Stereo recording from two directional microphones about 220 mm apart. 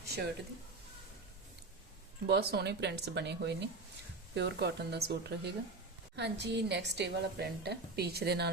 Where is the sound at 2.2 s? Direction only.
45° right (ahead or behind).